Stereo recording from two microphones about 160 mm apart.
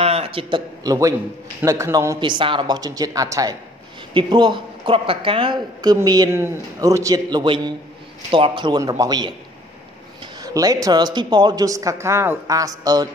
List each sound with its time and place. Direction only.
0.0 s a man's voice: 35° right (ahead or behind)
1.6 s speech: 20° right (ahead or behind)